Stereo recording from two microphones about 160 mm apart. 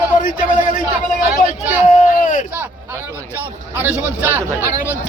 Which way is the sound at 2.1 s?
55° left (ahead or behind).